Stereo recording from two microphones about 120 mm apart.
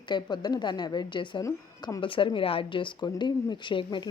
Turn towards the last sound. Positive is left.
turn(degrees=40)  # may be behind; listen again after turning